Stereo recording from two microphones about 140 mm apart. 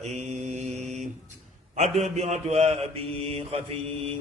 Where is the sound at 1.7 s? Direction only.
55° right (ahead or behind).